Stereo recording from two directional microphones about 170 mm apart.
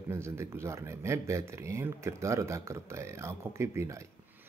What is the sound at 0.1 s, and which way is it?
A man's voice, 15° right (ahead or behind).